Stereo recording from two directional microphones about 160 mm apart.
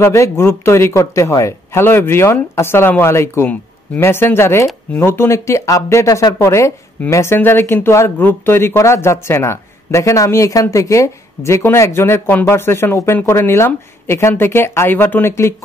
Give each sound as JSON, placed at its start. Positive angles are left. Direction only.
{"t": 0.0, "sound": "speech", "side_deg": 15}